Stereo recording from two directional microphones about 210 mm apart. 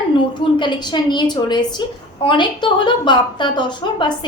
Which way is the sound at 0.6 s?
20° left (ahead or behind).